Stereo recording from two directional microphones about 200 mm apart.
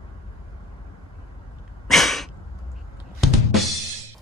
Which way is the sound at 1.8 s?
Centre (ahead or behind).